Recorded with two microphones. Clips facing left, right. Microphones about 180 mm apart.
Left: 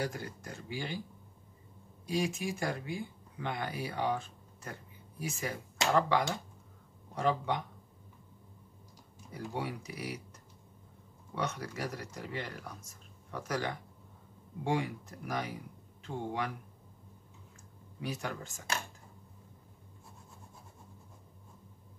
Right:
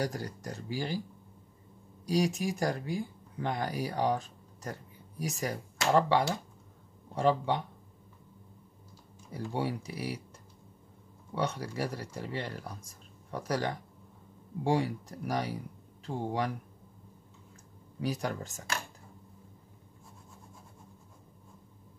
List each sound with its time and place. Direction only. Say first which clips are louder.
0.0 s speech: right 3 dB; 40° right (ahead or behind)
2.0 s speech: right 4 dB; 40° right (ahead or behind)
9.3 s speech: right 4 dB; 30° right (ahead or behind)
11.3 s speech: right 4 dB; 30° right (ahead or behind)
18.0 s speech: right 5 dB; 35° right (ahead or behind)